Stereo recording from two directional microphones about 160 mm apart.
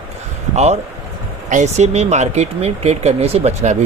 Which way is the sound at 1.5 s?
45° right (ahead or behind).